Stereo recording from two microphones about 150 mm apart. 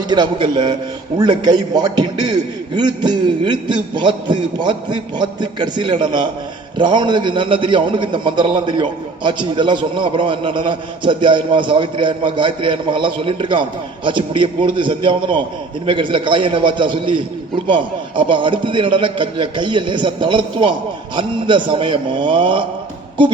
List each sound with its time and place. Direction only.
0.1 s a man's voice: 30° right (ahead or behind)